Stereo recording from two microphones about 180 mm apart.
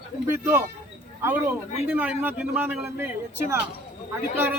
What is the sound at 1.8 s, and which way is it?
Speech, 10° right (ahead or behind).